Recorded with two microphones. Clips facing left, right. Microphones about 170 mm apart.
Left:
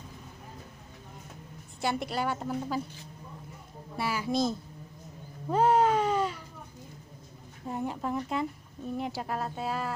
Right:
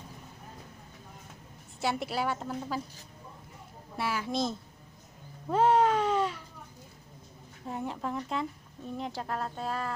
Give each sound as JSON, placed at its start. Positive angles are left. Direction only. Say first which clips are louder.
{"t": 1.8, "sound": "speech", "louder": "even", "side_deg": 0}
{"t": 3.9, "sound": "speech", "louder": "left 2 dB", "side_deg": 0}
{"t": 5.5, "sound": "baby cry", "louder": "even", "side_deg": 0}
{"t": 7.6, "sound": "speech", "louder": "left 2 dB", "side_deg": 0}